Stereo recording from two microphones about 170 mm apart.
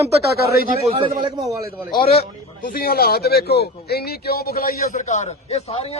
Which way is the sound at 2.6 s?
55° left (ahead or behind).